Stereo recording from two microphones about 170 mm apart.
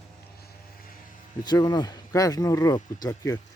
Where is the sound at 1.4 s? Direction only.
25° left (ahead or behind).